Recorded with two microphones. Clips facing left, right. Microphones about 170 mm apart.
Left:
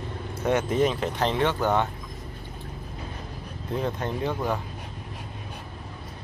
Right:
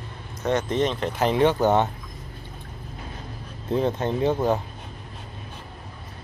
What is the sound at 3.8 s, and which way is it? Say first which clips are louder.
Speech: right 5 dB; 25° right (ahead or behind).